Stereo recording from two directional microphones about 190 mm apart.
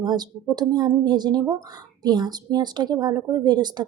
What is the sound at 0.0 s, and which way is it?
A woman's voice, 20° right (ahead or behind).